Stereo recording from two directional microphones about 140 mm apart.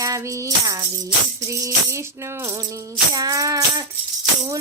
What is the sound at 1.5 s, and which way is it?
Music, 20° right (ahead or behind).